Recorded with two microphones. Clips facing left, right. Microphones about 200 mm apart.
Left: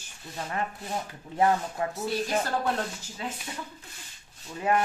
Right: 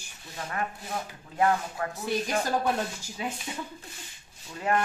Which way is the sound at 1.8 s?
25° left (ahead or behind).